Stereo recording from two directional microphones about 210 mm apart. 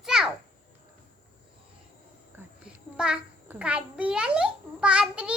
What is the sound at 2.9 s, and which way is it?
A child's voice, 5° right (ahead or behind).